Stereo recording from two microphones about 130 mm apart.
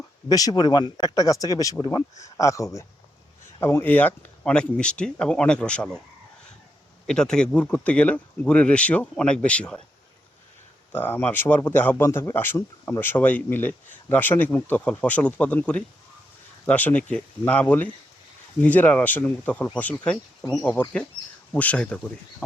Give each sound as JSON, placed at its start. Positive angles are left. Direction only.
{"t": 0.3, "sound": "a man's voice", "side_deg": 30}
{"t": 7.1, "sound": "a man's voice", "side_deg": 5}
{"t": 10.9, "sound": "a man's voice", "side_deg": 15}